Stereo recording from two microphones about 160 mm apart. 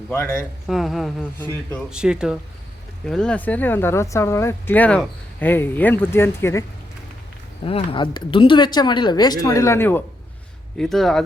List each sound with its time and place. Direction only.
0.7 s speech: centre (ahead or behind); by 6.7 s 15° left (ahead or behind)
7.6 s speech: 35° left (ahead or behind); by 10.0 s 15° left (ahead or behind)
10.8 s speech: centre (ahead or behind)